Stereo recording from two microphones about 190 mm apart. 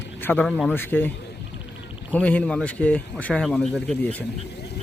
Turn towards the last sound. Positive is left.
turn(degrees=10)  # may be behind; listen again after turning